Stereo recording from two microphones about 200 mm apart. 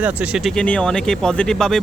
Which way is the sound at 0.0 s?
5° right (ahead or behind).